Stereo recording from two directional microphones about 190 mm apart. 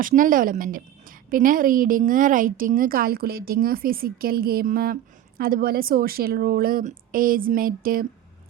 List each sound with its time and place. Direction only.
0.0 s a woman's voice: 45° right (ahead or behind)